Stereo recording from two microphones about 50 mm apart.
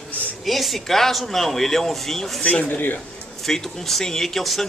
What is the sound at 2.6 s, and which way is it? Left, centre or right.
Speech, left.